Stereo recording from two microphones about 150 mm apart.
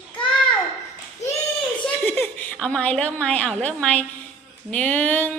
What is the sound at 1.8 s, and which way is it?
A woman's voice, 10° left (ahead or behind).